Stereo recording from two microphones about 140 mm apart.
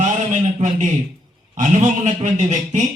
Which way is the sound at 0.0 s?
60° right (ahead or behind).